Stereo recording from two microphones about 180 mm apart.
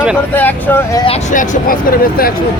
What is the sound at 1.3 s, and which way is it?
Speech, 45° left (ahead or behind).